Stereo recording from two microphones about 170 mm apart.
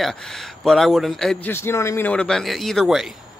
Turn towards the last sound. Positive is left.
turn(degrees=0)  # may be behind; listen again after turning